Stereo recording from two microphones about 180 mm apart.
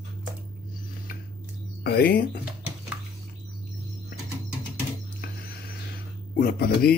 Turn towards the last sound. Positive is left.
turn(degrees=55)  # may be behind; listen again after turning